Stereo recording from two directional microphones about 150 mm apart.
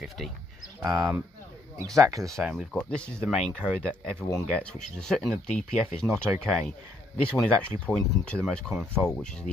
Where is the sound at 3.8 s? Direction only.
5° left (ahead or behind).